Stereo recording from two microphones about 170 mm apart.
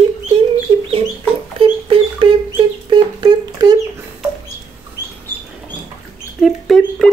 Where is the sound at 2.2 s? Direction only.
30° right (ahead or behind).